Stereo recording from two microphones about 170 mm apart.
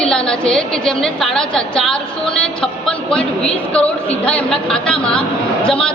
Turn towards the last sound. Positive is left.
turn(degrees=5)  # may be behind; listen again after turning